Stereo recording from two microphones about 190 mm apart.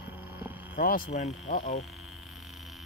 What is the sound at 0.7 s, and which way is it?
Speech, 45° left (ahead or behind).